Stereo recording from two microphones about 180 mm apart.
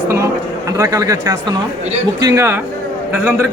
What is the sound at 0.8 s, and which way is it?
Speech, 20° right (ahead or behind).